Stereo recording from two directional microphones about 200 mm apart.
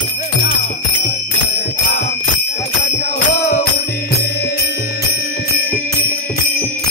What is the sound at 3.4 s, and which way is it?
Music, 45° left (ahead or behind).